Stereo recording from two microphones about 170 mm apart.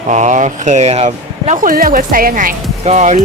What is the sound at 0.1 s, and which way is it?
A woman's voice, 45° right (ahead or behind).